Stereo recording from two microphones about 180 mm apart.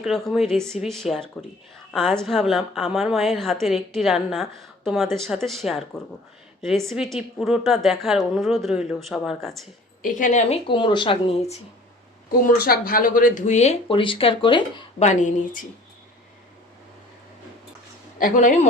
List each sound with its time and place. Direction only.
0.0 s a woman's voice: centre (ahead or behind)
10.0 s a woman's voice: 45° left (ahead or behind)
10.7 s speech: 25° left (ahead or behind)
12.5 s speech: 55° left (ahead or behind); by 15.0 s 25° left (ahead or behind)
15.0 s a woman's voice: 40° left (ahead or behind)
18.2 s speech: 45° left (ahead or behind)